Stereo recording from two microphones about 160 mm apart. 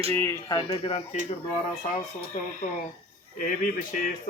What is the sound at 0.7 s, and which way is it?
Speech, 35° left (ahead or behind).